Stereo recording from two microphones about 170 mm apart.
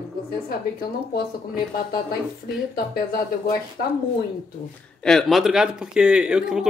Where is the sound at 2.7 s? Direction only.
65° left (ahead or behind).